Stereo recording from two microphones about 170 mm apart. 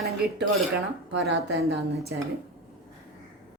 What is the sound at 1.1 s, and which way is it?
A woman's voice, 90° right.